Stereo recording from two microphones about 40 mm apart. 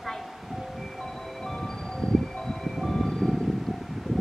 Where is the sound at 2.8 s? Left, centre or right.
Centre.